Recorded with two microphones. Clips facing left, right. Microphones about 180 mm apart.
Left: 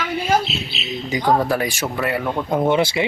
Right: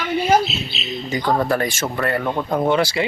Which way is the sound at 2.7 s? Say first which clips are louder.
Even; 20° left (ahead or behind).